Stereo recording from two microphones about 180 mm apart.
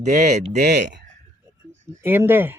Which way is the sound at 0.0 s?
40° right (ahead or behind).